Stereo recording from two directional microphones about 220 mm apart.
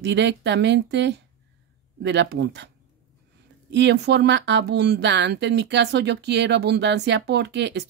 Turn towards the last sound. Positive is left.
turn(degrees=-50)  # may be behind; listen again after turning